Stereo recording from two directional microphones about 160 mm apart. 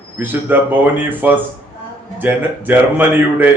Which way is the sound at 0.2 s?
10° right (ahead or behind).